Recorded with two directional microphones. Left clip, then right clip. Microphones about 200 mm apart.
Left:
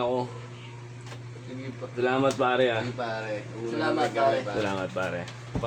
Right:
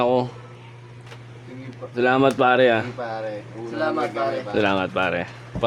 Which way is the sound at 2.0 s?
55° right (ahead or behind).